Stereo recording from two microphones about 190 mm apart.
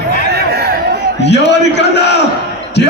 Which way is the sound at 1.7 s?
65° left (ahead or behind).